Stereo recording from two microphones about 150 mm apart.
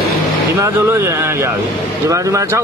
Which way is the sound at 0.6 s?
20° right (ahead or behind).